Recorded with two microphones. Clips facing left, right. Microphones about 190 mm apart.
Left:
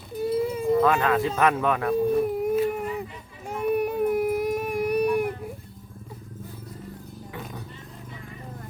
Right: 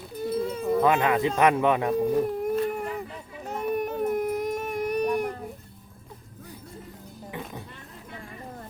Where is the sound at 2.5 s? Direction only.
5° left (ahead or behind).